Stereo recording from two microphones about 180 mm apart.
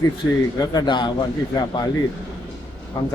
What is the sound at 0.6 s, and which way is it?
A man's voice, 20° left (ahead or behind).